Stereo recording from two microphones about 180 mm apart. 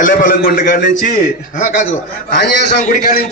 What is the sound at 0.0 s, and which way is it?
A man's voice, 50° left (ahead or behind).